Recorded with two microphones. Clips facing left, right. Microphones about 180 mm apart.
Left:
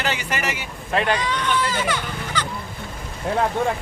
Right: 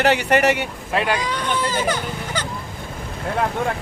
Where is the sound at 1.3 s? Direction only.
45° right (ahead or behind).